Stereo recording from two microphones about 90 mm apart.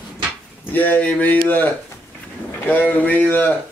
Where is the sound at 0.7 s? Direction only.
20° left (ahead or behind).